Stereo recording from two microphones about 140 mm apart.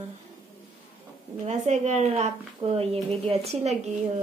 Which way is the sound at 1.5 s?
55° right (ahead or behind).